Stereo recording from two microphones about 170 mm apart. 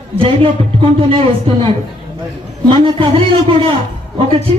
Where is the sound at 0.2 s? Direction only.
30° right (ahead or behind).